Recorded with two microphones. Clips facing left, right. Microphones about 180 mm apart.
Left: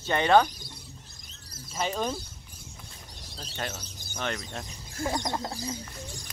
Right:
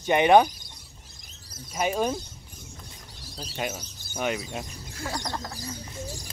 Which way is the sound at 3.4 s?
5° right (ahead or behind).